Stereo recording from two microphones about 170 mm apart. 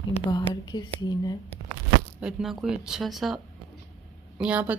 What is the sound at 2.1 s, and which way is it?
A woman's voice, 5° right (ahead or behind).